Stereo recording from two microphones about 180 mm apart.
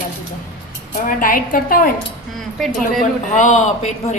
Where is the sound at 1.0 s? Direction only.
50° left (ahead or behind).